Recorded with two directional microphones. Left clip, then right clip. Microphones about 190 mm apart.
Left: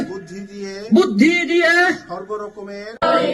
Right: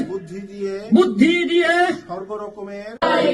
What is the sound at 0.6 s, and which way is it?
Speech, 15° right (ahead or behind).